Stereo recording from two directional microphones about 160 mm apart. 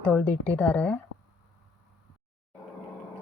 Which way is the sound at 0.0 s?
10° left (ahead or behind).